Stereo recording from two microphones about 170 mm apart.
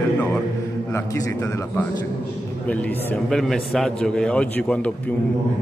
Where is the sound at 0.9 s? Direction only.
15° left (ahead or behind).